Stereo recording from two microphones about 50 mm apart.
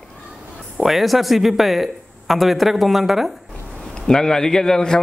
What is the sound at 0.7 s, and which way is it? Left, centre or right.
Speech, centre.